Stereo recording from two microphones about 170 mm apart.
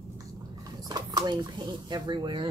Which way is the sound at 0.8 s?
25° right (ahead or behind).